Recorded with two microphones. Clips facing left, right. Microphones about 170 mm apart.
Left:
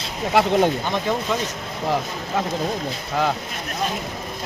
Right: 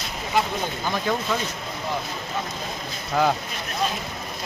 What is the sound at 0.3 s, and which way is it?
Speech, 75° left (ahead or behind).